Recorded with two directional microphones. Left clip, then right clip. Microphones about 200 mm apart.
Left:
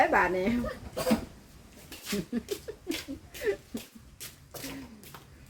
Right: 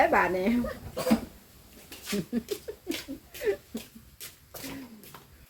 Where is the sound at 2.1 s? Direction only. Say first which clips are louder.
Right 1 dB; 5° right (ahead or behind).